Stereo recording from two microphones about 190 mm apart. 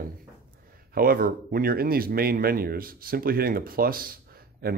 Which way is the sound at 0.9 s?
50° right (ahead or behind).